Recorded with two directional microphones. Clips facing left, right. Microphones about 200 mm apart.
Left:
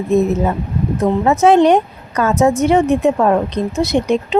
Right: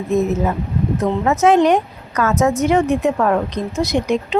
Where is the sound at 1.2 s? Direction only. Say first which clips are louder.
Left 3 dB; 30° left (ahead or behind).